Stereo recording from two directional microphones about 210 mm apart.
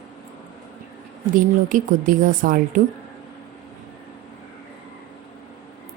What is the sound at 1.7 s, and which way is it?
A woman's voice, 40° right (ahead or behind).